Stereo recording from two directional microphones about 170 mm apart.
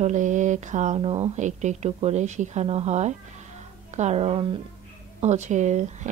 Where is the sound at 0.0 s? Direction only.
45° right (ahead or behind).